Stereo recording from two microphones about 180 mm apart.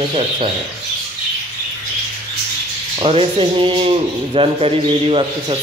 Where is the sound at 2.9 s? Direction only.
30° right (ahead or behind).